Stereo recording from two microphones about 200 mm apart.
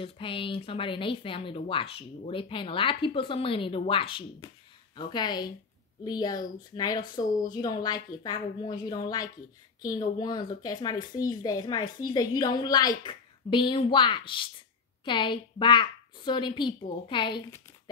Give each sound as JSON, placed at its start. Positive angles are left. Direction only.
{"t": 0.0, "sound": "speech", "side_deg": 25}